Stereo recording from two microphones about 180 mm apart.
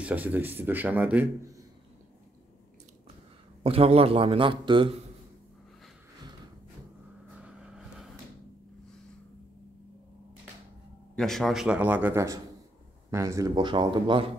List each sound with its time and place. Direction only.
0.0 s speech: 10° right (ahead or behind)
3.6 s a man's voice: 35° right (ahead or behind)
7.3 s vehicle: 5° right (ahead or behind)
11.1 s a man's voice: centre (ahead or behind); by 14.2 s 25° right (ahead or behind)